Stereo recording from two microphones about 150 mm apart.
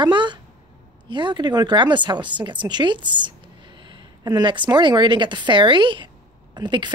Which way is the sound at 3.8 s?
30° right (ahead or behind).